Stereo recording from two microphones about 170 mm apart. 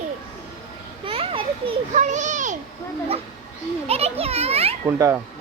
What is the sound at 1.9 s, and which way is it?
Speech, 45° right (ahead or behind).